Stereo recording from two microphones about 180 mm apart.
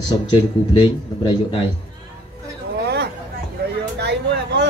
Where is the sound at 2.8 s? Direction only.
65° right (ahead or behind).